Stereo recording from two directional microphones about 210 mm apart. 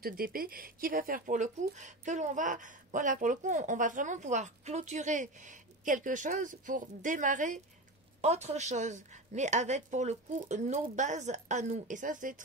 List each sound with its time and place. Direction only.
0.0 s speech: 45° right (ahead or behind)